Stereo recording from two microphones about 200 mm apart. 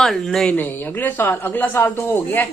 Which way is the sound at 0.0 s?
Centre (ahead or behind).